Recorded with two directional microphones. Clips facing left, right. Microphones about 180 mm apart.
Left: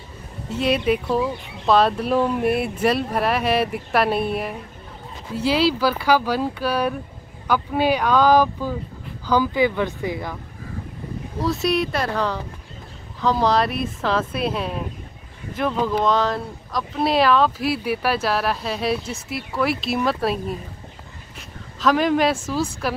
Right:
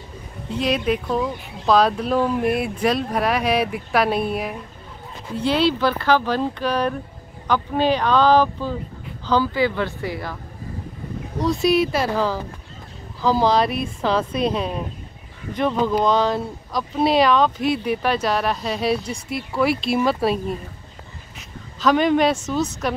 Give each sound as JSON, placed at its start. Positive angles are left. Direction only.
{"t": 0.5, "sound": "speech", "side_deg": 5}
{"t": 11.3, "sound": "speech", "side_deg": 0}
{"t": 21.7, "sound": "speech", "side_deg": 0}